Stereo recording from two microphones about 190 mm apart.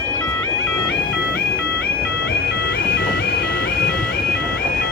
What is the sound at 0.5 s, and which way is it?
Bagpipes, 60° left (ahead or behind).